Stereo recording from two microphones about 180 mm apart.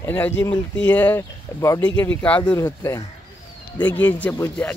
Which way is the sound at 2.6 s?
20° left (ahead or behind).